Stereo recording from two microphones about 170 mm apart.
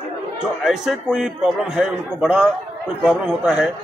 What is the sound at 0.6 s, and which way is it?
A man's voice, centre (ahead or behind).